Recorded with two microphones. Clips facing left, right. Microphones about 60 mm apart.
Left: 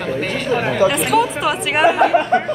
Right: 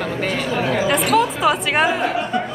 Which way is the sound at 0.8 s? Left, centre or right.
Centre.